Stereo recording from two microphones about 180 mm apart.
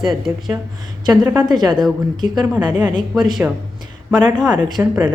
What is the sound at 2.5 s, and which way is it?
A woman's voice, 10° right (ahead or behind).